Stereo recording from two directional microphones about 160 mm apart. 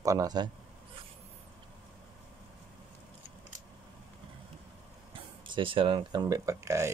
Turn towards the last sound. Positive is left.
turn(degrees=-20)  # may be behind; listen again after turning